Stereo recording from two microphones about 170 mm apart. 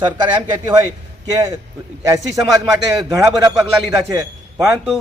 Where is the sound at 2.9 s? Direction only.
20° right (ahead or behind).